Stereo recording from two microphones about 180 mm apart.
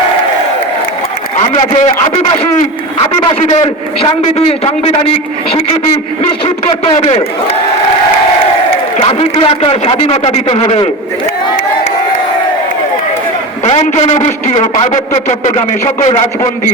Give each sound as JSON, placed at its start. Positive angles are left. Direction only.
{"t": 1.4, "sound": "a man's voice", "side_deg": 35}
{"t": 3.4, "sound": "a man's voice", "side_deg": 40}
{"t": 6.4, "sound": "a man's voice", "side_deg": 35}
{"t": 9.0, "sound": "a man's voice", "side_deg": 30}
{"t": 13.7, "sound": "a man's voice", "side_deg": 35}